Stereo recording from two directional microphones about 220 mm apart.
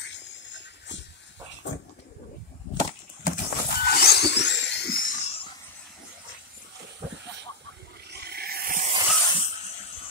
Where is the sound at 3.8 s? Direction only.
45° left (ahead or behind).